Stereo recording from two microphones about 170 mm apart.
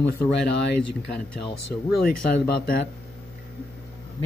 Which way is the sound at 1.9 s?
65° left (ahead or behind).